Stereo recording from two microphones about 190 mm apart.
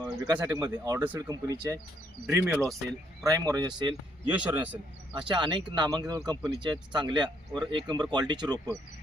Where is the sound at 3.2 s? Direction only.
20° right (ahead or behind).